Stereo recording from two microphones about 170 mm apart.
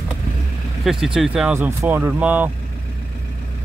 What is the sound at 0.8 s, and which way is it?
Speech, centre (ahead or behind).